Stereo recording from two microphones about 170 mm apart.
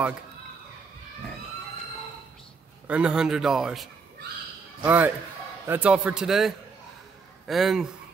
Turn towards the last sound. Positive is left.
turn(degrees=0)  # may be behind; listen again after turning